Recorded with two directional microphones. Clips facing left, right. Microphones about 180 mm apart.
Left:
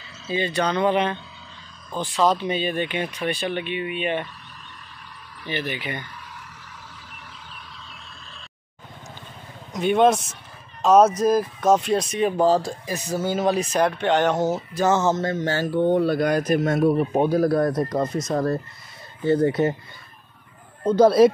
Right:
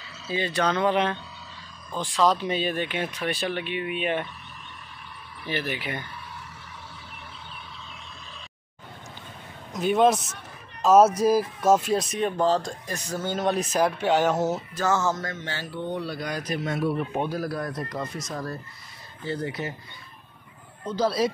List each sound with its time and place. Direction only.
0.0 s speech: centre (ahead or behind)
5.4 s speech: 5° right (ahead or behind)
9.7 s speech: centre (ahead or behind)
14.7 s speech: 15° left (ahead or behind)
15.3 s speech: 45° left (ahead or behind)
21.0 s speech: 55° left (ahead or behind)